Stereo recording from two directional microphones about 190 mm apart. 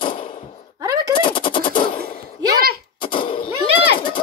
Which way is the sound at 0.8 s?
20° right (ahead or behind).